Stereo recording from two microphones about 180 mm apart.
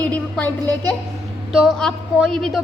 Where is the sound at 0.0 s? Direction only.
10° left (ahead or behind).